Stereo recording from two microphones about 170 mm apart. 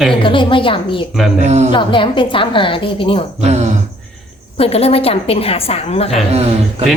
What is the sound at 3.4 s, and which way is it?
Speech, 40° right (ahead or behind).